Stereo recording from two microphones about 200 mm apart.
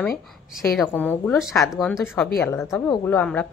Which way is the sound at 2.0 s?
10° left (ahead or behind).